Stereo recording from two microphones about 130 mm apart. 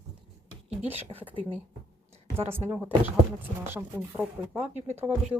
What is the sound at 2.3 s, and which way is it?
A woman's voice, 20° right (ahead or behind).